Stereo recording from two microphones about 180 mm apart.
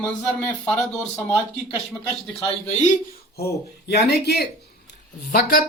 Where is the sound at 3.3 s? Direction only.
65° left (ahead or behind).